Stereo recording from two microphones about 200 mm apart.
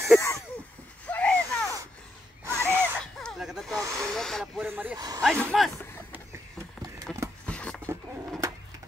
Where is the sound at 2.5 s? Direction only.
10° right (ahead or behind).